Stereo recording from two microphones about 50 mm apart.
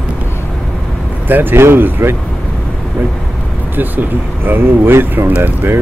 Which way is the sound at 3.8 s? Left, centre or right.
Right.